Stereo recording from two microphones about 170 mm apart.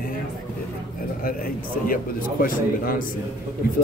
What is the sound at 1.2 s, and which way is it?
Speech, 55° left (ahead or behind).